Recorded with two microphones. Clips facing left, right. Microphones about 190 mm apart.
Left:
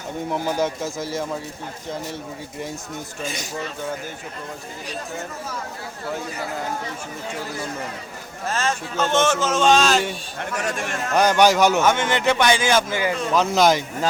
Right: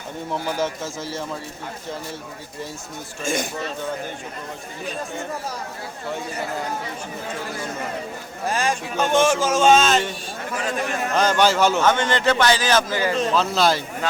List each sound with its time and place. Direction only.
0.3 s a man's voice: 15° left (ahead or behind)
3.2 s speech: 50° right (ahead or behind)
8.4 s speech: 15° right (ahead or behind)
11.1 s a man's voice: 15° left (ahead or behind)